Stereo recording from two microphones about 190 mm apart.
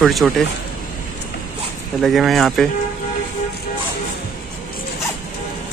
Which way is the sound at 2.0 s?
Centre (ahead or behind).